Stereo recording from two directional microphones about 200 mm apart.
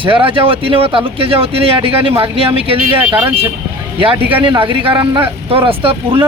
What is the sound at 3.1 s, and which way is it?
Speech, 10° right (ahead or behind).